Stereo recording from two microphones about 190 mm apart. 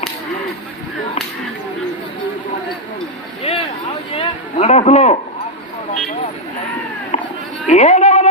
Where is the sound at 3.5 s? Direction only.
30° left (ahead or behind).